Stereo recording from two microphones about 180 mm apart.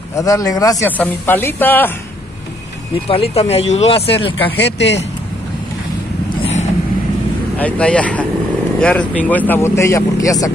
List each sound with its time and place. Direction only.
0.1 s speech: 20° left (ahead or behind)
3.1 s speech: 35° left (ahead or behind)
4.6 s speech: 80° left
7.5 s speech: 10° left (ahead or behind)